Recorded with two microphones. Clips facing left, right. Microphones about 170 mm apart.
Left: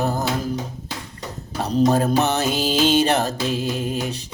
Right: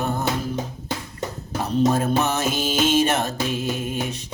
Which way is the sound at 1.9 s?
35° left (ahead or behind).